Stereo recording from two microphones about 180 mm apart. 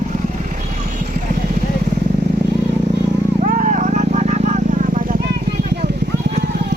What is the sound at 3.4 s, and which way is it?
Vehicle, 45° right (ahead or behind).